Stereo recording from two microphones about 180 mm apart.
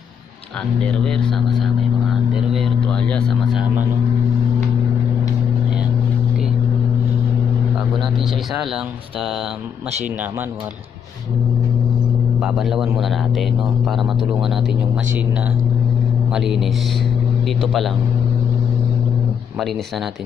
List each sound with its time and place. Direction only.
0.8 s speech: 5° left (ahead or behind)
12.4 s speech: centre (ahead or behind)
16.3 s speech: centre (ahead or behind)